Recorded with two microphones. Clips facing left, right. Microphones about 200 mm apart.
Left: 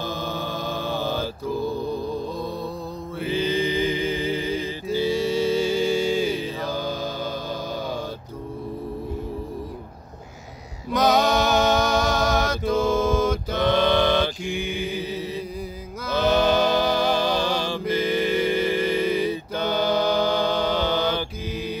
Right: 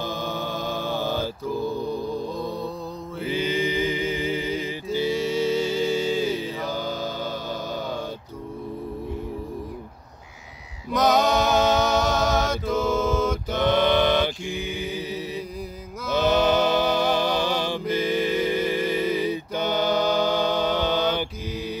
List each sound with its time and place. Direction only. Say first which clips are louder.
0.0 s chant: even; 15° right (ahead or behind)
0.8 s mantra: left 1 dB; 15° left (ahead or behind)
3.3 s chant: left 1 dB; 20° right (ahead or behind)
10.9 s a sound: left 1 dB; centre (ahead or behind)
11.8 s music: even; 20° right (ahead or behind)
13.5 s a sound: right 1 dB; 20° right (ahead or behind)
16.1 s music: even; 20° right (ahead or behind)
20.2 s mantra: even; 20° right (ahead or behind)